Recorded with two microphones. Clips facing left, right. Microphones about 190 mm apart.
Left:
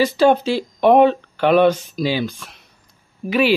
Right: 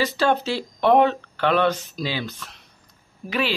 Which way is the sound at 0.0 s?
10° left (ahead or behind).